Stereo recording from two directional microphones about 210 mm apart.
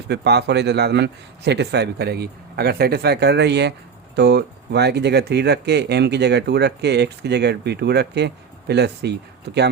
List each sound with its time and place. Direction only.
0.1 s a man's voice: 55° right (ahead or behind)